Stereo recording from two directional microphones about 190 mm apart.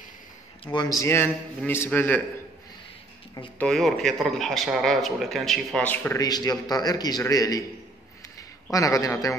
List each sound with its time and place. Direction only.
0.7 s a man's voice: 20° left (ahead or behind)
3.5 s a man's voice: centre (ahead or behind)